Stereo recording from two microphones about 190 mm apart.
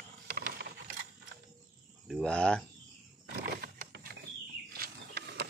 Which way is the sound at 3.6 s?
55° right (ahead or behind).